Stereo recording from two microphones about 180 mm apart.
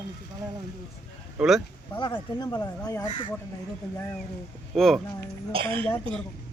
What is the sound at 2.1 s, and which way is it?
Speech, 20° left (ahead or behind).